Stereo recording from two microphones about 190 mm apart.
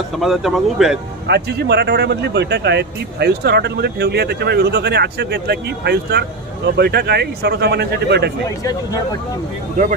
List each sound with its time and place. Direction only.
0.2 s speech: centre (ahead or behind)
1.2 s speech: 60° right (ahead or behind)